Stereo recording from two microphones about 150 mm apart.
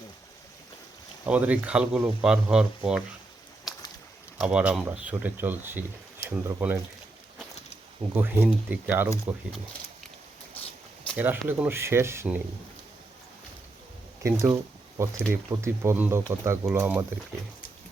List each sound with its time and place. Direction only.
1.2 s speech: 10° right (ahead or behind)
4.4 s speech: 5° right (ahead or behind)
8.1 s speech: 10° right (ahead or behind)
11.2 s speech: 10° right (ahead or behind)
14.3 s speech: 20° right (ahead or behind)